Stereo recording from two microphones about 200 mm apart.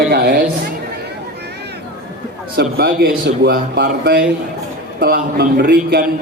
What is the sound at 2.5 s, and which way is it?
A man's voice, 50° right (ahead or behind).